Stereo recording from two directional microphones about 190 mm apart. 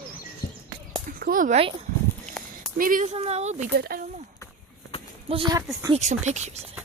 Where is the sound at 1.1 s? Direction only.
50° right (ahead or behind).